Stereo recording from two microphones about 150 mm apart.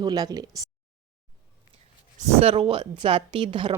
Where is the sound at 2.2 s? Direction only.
50° right (ahead or behind).